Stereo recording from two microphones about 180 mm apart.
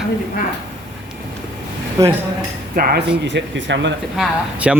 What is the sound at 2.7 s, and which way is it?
Speech, 60° right (ahead or behind).